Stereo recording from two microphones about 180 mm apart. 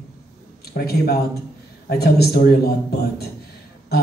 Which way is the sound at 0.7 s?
60° left (ahead or behind).